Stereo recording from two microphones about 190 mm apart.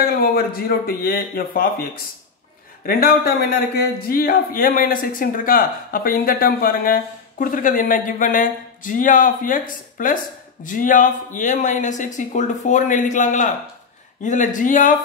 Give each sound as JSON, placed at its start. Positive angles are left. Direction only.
{"t": 0.0, "sound": "speech", "side_deg": 50}
{"t": 2.9, "sound": "a man's voice", "side_deg": 50}